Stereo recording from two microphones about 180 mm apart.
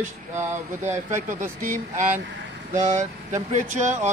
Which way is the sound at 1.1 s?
45° right (ahead or behind).